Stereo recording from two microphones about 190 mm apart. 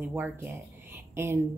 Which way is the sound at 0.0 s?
10° right (ahead or behind).